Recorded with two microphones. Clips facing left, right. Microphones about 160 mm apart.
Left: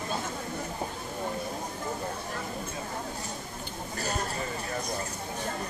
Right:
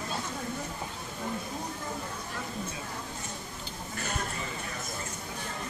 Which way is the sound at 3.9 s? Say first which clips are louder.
Left 3 dB; 35° left (ahead or behind).